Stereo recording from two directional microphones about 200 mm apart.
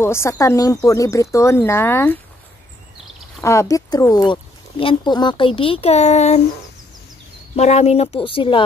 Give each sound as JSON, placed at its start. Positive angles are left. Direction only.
{"t": 0.0, "sound": "speech", "side_deg": 15}
{"t": 3.4, "sound": "speech", "side_deg": 15}
{"t": 7.5, "sound": "speech", "side_deg": 35}